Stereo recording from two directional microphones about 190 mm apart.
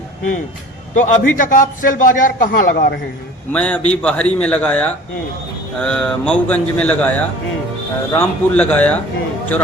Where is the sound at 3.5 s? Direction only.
5° left (ahead or behind).